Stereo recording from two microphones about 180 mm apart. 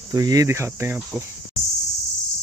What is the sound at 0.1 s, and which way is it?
Speech, 20° right (ahead or behind).